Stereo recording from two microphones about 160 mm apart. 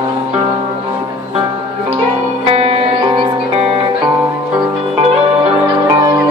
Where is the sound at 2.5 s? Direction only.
35° right (ahead or behind).